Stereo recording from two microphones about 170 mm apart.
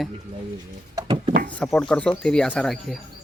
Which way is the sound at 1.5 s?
5° left (ahead or behind).